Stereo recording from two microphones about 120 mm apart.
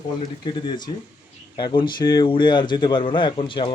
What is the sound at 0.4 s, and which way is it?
Speech, 40° left (ahead or behind).